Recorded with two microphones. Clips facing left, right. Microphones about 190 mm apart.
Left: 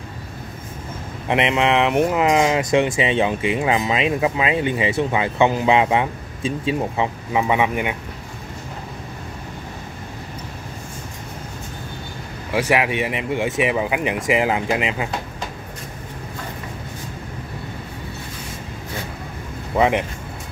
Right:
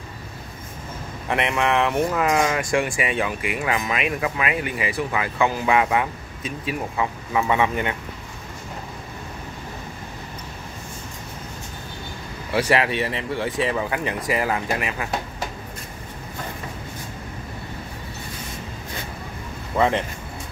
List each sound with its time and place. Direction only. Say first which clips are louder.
1.3 s speech: left 3 dB; 20° left (ahead or behind)
12.5 s speech: left 1 dB; 10° left (ahead or behind)
19.8 s speech: left 2 dB; 15° left (ahead or behind)